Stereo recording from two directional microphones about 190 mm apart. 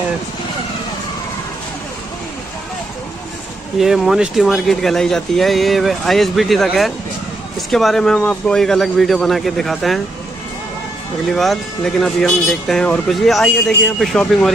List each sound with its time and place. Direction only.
3.8 s speech: centre (ahead or behind)
11.2 s speech: centre (ahead or behind)